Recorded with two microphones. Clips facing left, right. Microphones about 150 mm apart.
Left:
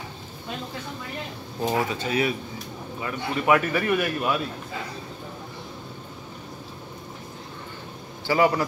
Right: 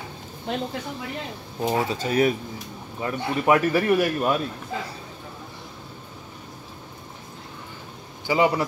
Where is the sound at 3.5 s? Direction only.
35° right (ahead or behind).